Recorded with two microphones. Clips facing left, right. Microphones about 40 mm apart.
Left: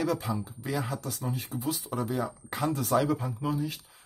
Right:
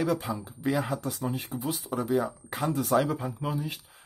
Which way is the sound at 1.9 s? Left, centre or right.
Centre.